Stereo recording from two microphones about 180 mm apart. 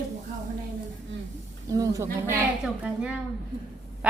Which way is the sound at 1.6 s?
20° right (ahead or behind).